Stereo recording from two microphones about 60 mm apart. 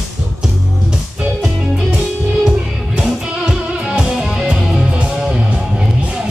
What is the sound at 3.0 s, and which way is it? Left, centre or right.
Music, centre.